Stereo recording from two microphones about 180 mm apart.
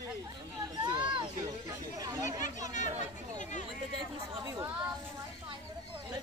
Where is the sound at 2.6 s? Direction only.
45° left (ahead or behind).